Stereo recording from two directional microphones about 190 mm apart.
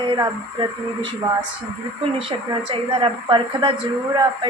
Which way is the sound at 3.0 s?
25° right (ahead or behind).